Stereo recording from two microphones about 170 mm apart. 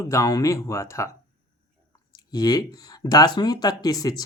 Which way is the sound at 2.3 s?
25° left (ahead or behind).